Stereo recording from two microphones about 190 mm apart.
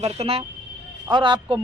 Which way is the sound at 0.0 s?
35° right (ahead or behind).